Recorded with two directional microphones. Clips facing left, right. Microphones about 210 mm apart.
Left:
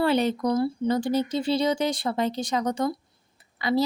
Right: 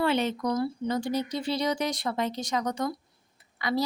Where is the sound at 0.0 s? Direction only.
35° left (ahead or behind).